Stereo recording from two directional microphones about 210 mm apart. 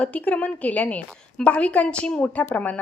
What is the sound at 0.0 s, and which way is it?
A woman's voice, 5° left (ahead or behind).